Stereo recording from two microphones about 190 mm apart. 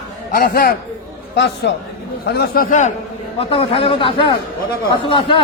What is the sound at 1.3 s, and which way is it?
A man's voice, 65° left (ahead or behind).